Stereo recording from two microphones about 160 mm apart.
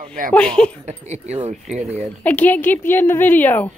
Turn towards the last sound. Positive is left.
turn(degrees=10)  # may be behind; listen again after turning